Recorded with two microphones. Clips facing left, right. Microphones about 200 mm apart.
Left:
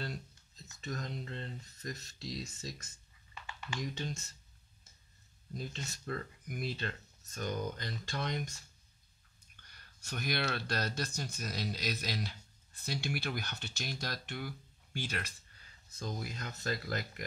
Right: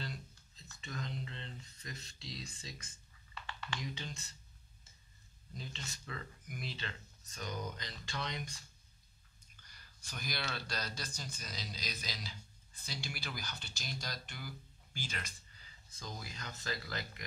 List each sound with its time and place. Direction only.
0.7 s speech: 45° left (ahead or behind)
3.4 s a sound: 10° left (ahead or behind)
3.8 s speech: 45° left (ahead or behind)
5.5 s speech: 50° left (ahead or behind)
9.6 s speech: 60° left (ahead or behind)